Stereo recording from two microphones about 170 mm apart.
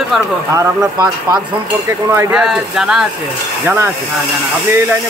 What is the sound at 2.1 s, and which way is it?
Speech, 15° right (ahead or behind).